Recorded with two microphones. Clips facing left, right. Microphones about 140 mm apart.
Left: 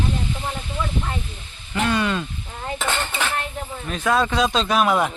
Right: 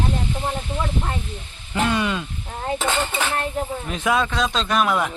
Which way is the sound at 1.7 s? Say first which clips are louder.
Even; 20° right (ahead or behind).